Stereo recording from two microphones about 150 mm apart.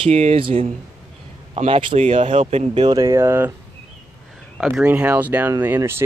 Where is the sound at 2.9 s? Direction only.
25° right (ahead or behind).